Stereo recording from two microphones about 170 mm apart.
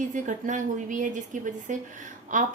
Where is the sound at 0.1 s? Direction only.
50° right (ahead or behind).